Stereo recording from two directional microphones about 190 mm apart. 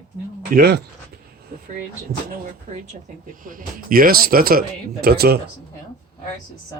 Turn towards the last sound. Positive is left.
turn(degrees=-55)  # may be behind; listen again after turning